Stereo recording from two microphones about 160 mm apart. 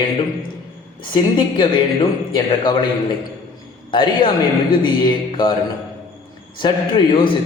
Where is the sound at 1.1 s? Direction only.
30° left (ahead or behind).